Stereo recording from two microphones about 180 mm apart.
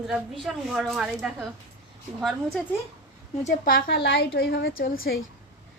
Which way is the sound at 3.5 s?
50° left (ahead or behind).